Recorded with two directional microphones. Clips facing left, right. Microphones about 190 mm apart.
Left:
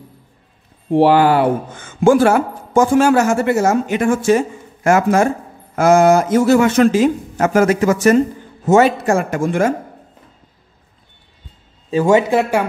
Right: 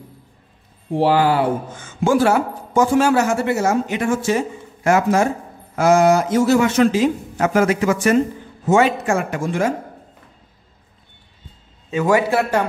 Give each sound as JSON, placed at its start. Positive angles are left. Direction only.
{"t": 0.9, "sound": "speech", "side_deg": 60}
{"t": 11.9, "sound": "a man's voice", "side_deg": 25}